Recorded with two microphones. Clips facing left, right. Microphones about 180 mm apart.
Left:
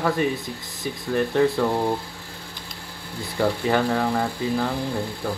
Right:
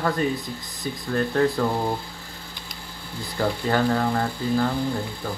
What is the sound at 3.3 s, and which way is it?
Speech, 5° left (ahead or behind).